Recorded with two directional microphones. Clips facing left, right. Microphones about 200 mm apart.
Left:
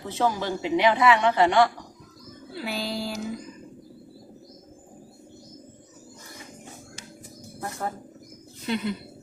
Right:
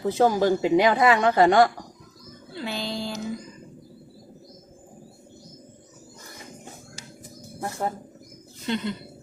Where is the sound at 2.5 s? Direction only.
5° left (ahead or behind).